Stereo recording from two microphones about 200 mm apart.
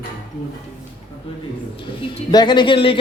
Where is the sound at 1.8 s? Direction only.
25° left (ahead or behind).